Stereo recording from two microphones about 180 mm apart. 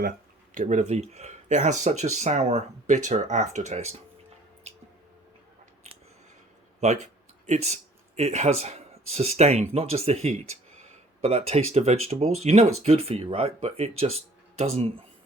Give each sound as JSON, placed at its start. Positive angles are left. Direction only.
{"t": 0.5, "sound": "speech", "side_deg": -45}
{"t": 6.7, "sound": "speech", "side_deg": -40}